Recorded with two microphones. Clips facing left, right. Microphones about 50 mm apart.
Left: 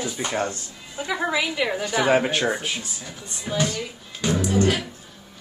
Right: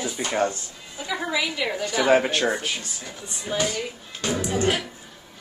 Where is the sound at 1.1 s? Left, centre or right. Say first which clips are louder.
Left 2 dB; centre.